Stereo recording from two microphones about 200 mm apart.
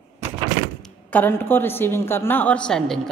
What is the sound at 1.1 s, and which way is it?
A woman's voice, 10° left (ahead or behind).